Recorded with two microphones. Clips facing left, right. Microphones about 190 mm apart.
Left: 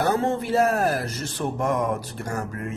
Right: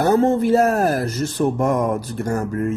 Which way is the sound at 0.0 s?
40° right (ahead or behind).